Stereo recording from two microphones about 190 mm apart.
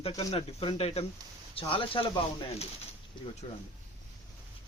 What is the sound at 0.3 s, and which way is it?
Speech, 30° left (ahead or behind).